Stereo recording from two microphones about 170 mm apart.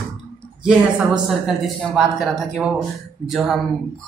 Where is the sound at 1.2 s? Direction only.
Centre (ahead or behind).